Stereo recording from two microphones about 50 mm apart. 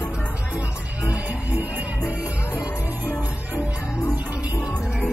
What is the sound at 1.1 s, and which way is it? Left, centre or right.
Music, right.